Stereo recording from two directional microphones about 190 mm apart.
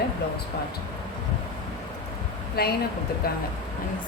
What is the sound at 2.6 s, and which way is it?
Speech, 55° left (ahead or behind).